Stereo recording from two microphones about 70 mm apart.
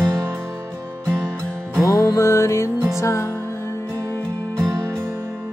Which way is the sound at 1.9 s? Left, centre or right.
Left.